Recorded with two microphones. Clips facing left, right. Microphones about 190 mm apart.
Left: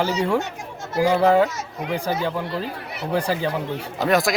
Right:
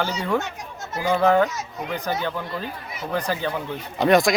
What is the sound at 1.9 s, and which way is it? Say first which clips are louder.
Speech: left 3 dB; 10° left (ahead or behind).